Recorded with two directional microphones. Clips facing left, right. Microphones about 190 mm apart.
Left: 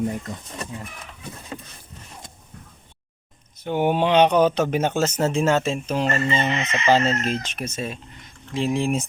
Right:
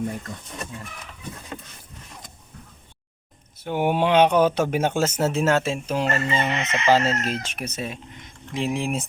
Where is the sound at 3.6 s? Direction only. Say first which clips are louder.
Left 1 dB; 10° right (ahead or behind).